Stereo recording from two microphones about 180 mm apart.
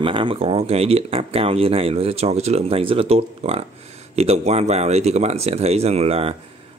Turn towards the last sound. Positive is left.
turn(degrees=-35)  # may be behind; listen again after turning